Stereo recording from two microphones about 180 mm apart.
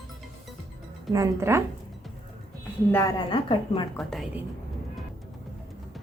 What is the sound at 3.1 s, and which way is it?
Speech, 25° left (ahead or behind).